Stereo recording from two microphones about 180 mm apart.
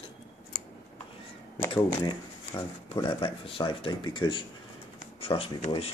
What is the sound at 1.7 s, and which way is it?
Speech, 25° left (ahead or behind).